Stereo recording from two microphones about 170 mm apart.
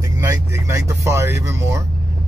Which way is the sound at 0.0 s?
15° right (ahead or behind).